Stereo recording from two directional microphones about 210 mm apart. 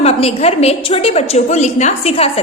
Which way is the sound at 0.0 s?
30° left (ahead or behind).